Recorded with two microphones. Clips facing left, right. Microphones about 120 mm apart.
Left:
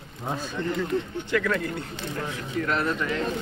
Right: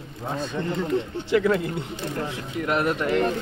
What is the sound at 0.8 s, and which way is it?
Speech, 25° right (ahead or behind).